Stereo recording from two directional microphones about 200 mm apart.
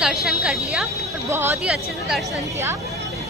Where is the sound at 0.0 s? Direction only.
Centre (ahead or behind).